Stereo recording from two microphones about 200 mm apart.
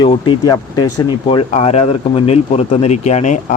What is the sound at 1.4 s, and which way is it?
Speech, 35° left (ahead or behind).